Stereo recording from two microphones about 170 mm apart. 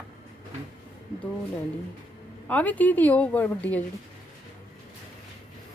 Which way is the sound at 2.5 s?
10° left (ahead or behind).